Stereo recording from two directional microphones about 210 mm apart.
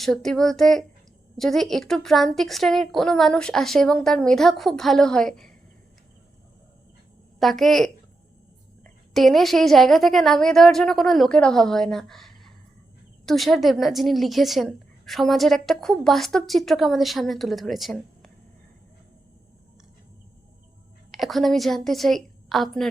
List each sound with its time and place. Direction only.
0.0 s a woman's voice: centre (ahead or behind)
7.3 s a woman's voice: centre (ahead or behind)
21.1 s a woman's voice: centre (ahead or behind)